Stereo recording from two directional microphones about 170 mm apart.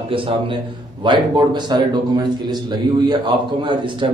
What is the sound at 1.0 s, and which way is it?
A man's voice, 25° right (ahead or behind).